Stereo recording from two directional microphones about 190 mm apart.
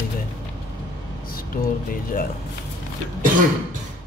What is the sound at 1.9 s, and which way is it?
Speech, 50° left (ahead or behind).